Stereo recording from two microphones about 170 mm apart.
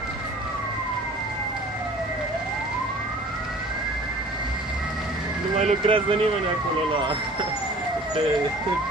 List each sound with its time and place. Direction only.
5.6 s speech: 35° right (ahead or behind)